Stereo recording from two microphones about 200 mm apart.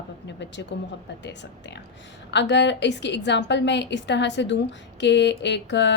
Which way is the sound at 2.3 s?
60° left (ahead or behind).